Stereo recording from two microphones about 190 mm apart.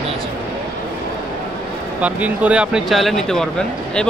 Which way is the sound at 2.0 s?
5° right (ahead or behind).